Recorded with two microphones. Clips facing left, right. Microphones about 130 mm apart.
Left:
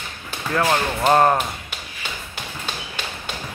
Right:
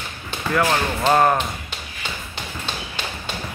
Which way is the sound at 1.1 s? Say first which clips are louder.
Left 1 dB; 20° left (ahead or behind).